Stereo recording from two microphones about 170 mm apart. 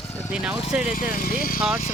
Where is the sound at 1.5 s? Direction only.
5° right (ahead or behind).